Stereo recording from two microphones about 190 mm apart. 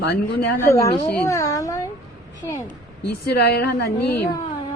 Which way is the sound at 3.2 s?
60° left (ahead or behind).